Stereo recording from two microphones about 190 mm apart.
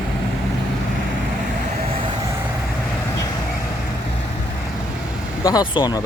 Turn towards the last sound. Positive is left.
turn(degrees=25)  # may be behind; listen again after turning